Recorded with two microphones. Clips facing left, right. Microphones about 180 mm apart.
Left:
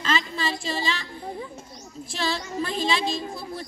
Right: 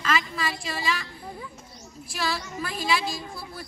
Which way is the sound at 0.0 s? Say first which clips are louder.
Left 1 dB; 30° left (ahead or behind).